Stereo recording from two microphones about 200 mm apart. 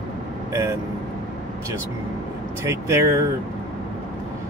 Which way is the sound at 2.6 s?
15° right (ahead or behind).